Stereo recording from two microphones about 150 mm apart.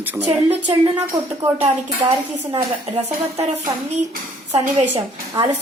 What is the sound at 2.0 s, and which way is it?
Speech, 20° right (ahead or behind).